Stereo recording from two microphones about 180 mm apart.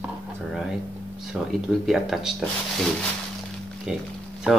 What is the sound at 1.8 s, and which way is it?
Speech, centre (ahead or behind).